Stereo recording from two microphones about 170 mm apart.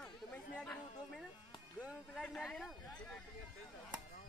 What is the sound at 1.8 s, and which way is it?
Music, 5° right (ahead or behind).